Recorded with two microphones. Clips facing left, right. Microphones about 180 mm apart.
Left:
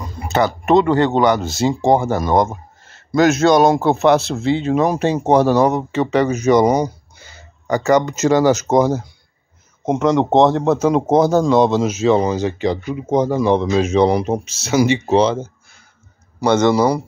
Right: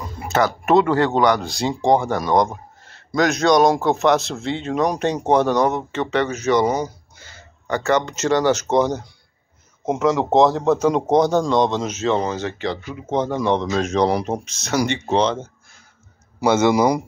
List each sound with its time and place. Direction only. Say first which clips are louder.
0.3 s speech: left 2 dB; centre (ahead or behind)
16.3 s a man's voice: left 2 dB; 10° right (ahead or behind)